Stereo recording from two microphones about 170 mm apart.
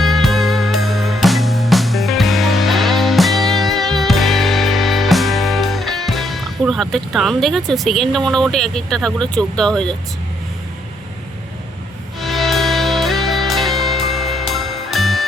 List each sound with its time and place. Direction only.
0.0 s music: centre (ahead or behind)
12.2 s music: centre (ahead or behind)